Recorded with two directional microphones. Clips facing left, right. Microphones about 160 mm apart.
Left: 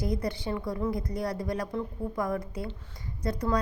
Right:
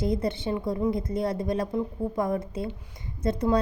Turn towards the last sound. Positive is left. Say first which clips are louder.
# right 5 dB
turn(degrees=-25)  # may be behind; listen again after turning